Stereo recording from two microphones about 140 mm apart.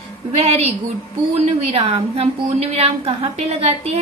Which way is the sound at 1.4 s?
50° right (ahead or behind).